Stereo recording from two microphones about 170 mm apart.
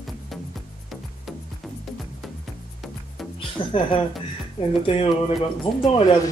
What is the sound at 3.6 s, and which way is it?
Speech, 30° left (ahead or behind).